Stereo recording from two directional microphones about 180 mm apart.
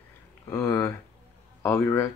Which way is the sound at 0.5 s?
15° left (ahead or behind).